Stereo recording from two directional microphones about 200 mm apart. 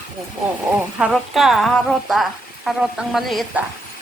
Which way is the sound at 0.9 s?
5° right (ahead or behind).